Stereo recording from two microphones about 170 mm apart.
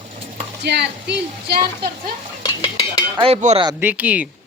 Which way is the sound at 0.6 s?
75° right (ahead or behind).